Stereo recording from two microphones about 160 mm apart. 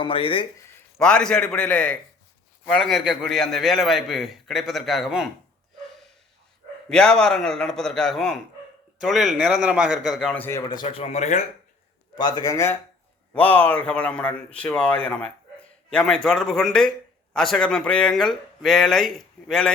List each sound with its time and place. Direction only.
0.0 s speech: 35° left (ahead or behind)
0.9 s a man's voice: 5° left (ahead or behind)
6.9 s a man's voice: 5° left (ahead or behind)
10.7 s a man's voice: 25° left (ahead or behind)
11.0 s speech: 45° left (ahead or behind)
12.1 s a man's voice: 25° left (ahead or behind); by 19.7 s 5° left (ahead or behind)